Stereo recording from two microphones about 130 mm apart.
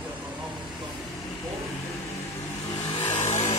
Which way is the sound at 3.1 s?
60° left (ahead or behind).